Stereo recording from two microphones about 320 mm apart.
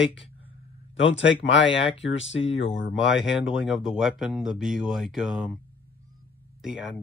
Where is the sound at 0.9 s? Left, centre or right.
Left.